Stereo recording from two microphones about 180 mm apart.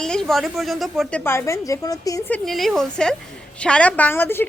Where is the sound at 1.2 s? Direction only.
15° left (ahead or behind).